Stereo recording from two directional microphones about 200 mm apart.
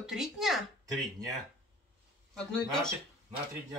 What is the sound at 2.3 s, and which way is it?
Speech, 5° left (ahead or behind).